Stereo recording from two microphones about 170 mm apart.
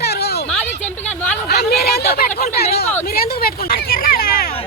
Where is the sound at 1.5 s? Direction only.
70° left (ahead or behind).